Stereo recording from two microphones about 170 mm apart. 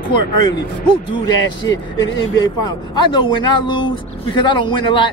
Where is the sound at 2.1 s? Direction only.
25° left (ahead or behind).